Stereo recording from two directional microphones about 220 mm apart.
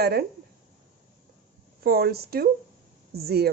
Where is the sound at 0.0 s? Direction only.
45° right (ahead or behind).